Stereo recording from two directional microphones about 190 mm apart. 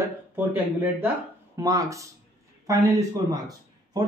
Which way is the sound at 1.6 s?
20° right (ahead or behind).